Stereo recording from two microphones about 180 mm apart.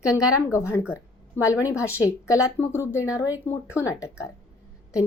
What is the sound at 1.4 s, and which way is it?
Speech, 15° right (ahead or behind).